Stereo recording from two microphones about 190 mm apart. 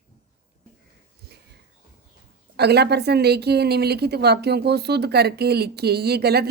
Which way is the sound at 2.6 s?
60° right (ahead or behind).